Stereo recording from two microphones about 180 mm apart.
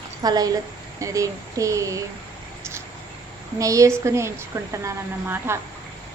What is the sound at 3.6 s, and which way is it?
A woman's voice, 15° right (ahead or behind).